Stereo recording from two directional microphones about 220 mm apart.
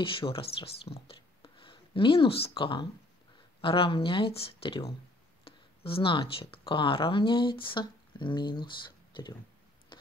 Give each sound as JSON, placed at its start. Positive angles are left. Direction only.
{"t": 0.0, "sound": "speech", "side_deg": 25}